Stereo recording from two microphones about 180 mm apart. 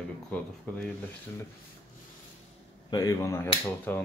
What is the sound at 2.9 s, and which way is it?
Speech, 20° left (ahead or behind).